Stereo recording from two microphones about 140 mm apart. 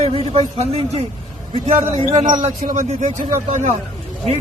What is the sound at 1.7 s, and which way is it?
A man's voice, 60° right (ahead or behind).